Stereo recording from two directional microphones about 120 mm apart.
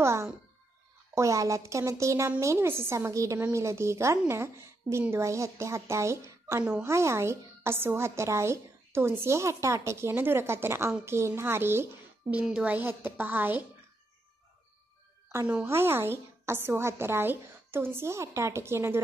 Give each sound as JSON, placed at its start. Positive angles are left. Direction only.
{"t": 0.0, "sound": "a sound", "side_deg": -25}
{"t": 1.1, "sound": "a woman's voice", "side_deg": -25}
{"t": 12.4, "sound": "a woman's voice", "side_deg": -5}
{"t": 15.4, "sound": "a woman's voice", "side_deg": -10}